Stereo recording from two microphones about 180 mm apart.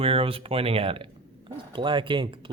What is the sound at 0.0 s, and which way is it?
Speech, 30° right (ahead or behind).